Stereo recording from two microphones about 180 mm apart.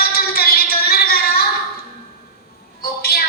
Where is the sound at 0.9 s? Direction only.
55° left (ahead or behind).